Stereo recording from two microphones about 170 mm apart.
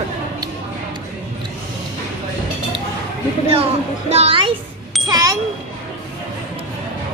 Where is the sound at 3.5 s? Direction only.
35° right (ahead or behind).